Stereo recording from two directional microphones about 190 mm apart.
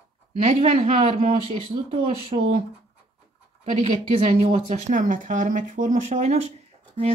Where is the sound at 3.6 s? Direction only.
35° right (ahead or behind).